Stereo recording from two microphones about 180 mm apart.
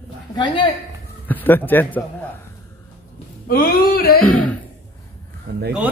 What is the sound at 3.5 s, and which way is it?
Speech, 55° left (ahead or behind).